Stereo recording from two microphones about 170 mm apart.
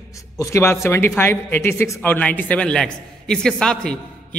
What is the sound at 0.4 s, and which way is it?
A man's voice, 15° left (ahead or behind).